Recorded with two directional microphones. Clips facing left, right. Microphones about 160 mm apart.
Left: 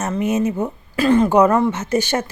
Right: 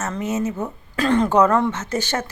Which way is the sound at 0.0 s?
15° left (ahead or behind).